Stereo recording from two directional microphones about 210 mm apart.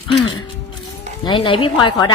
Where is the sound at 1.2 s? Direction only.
25° left (ahead or behind).